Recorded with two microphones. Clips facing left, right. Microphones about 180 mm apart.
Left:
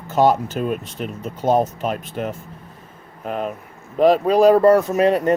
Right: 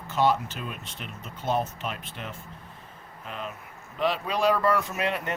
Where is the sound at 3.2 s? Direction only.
50° left (ahead or behind).